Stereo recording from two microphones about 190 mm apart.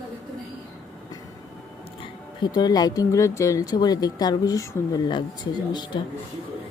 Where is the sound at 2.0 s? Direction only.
25° left (ahead or behind).